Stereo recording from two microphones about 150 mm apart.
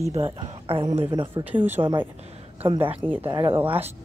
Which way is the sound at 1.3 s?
10° right (ahead or behind).